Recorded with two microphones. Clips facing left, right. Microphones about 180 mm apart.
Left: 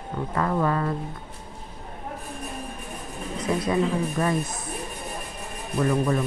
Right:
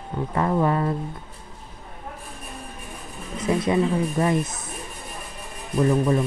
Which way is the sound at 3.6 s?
20° right (ahead or behind).